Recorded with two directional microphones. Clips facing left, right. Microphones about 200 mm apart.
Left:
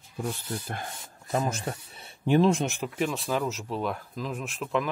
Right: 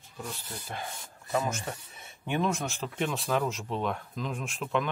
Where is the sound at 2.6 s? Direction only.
20° left (ahead or behind).